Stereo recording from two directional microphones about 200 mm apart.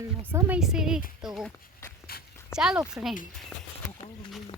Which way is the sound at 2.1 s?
50° left (ahead or behind).